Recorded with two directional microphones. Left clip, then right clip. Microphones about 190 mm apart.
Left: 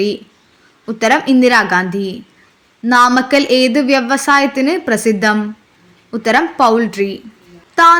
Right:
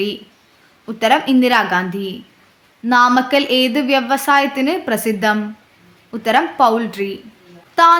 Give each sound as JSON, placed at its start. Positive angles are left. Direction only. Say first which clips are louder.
{"t": 0.9, "sound": "a woman's voice", "louder": "left 2 dB", "side_deg": 15}